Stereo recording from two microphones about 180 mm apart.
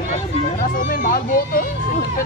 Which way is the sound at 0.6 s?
50° left (ahead or behind).